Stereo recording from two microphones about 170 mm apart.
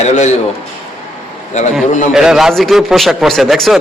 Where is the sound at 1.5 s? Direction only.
45° left (ahead or behind).